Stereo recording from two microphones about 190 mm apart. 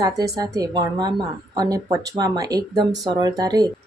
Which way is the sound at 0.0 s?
20° right (ahead or behind).